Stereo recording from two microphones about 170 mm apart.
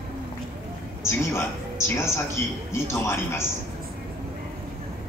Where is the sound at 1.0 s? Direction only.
15° left (ahead or behind).